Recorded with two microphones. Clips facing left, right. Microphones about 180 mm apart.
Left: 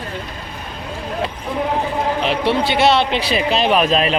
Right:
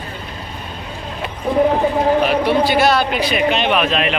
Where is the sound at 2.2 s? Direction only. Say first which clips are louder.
Right 2 dB; 25° left (ahead or behind).